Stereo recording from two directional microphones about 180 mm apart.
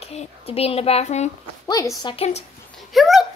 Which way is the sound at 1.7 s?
20° left (ahead or behind).